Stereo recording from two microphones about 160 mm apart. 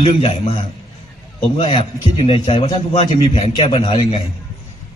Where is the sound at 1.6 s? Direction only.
25° left (ahead or behind).